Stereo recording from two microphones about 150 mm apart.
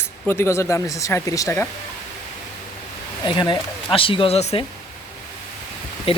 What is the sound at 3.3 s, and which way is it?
Speech, 30° left (ahead or behind).